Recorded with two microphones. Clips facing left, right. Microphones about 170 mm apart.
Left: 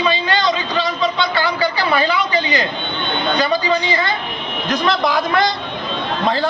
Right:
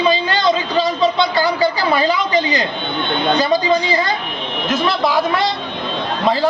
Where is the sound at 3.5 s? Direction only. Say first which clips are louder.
Right 2 dB; 40° right (ahead or behind).